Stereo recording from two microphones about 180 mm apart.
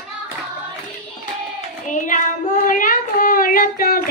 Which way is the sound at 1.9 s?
45° left (ahead or behind).